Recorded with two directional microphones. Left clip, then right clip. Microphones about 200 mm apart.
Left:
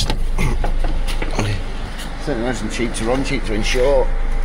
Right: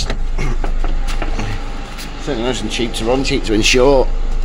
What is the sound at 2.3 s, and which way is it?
Speech, 10° right (ahead or behind).